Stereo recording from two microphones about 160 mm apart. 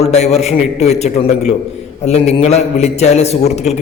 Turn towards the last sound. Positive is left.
turn(degrees=45)  # may be behind; listen again after turning